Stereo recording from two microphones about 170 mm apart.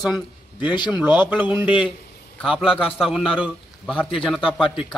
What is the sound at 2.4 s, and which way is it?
A man's voice, centre (ahead or behind).